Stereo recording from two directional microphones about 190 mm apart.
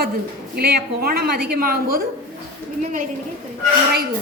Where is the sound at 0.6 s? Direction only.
55° right (ahead or behind).